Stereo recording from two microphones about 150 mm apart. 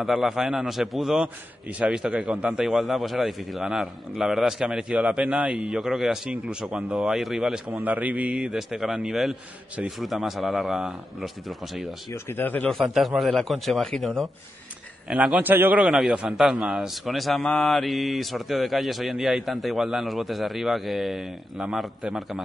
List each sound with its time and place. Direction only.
0.0 s a man's voice: centre (ahead or behind)
12.1 s a man's voice: 15° left (ahead or behind); by 22.4 s centre (ahead or behind)